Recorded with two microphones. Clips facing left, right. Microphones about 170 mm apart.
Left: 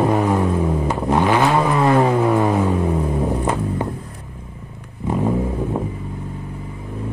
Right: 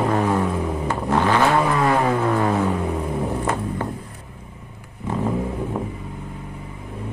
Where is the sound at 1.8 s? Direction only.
15° left (ahead or behind).